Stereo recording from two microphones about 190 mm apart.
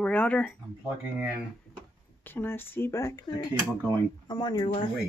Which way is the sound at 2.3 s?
10° left (ahead or behind).